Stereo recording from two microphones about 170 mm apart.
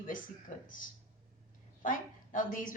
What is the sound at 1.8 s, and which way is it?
Speech, 50° left (ahead or behind).